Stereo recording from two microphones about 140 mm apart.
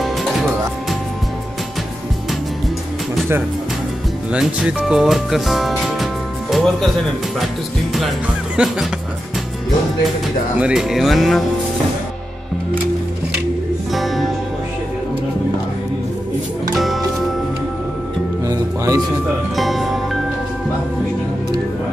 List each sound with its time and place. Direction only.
0.0 s music: centre (ahead or behind)
4.3 s speech: 5° right (ahead or behind)
8.6 s speech: 5° right (ahead or behind)
10.6 s speech: 5° right (ahead or behind)
13.9 s music: centre (ahead or behind)
16.7 s music: centre (ahead or behind)
18.5 s music: 25° right (ahead or behind)
19.5 s speech: centre (ahead or behind)